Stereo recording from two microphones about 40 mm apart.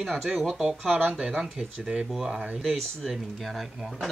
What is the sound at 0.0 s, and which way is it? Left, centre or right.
Speech, centre.